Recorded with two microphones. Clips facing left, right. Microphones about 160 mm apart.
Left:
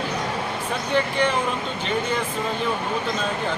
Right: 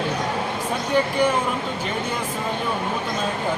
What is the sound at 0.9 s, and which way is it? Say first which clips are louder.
Speech: right 2 dB; 10° right (ahead or behind).